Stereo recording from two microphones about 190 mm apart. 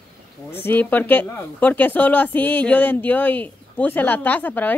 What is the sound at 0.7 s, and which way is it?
A woman's voice, 10° left (ahead or behind).